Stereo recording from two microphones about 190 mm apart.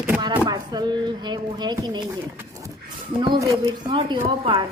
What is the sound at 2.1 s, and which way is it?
Bird, 15° right (ahead or behind).